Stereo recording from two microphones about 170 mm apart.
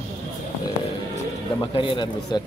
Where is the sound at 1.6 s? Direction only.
30° left (ahead or behind).